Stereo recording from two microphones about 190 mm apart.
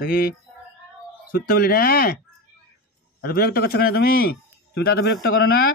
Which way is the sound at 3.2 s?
55° left (ahead or behind).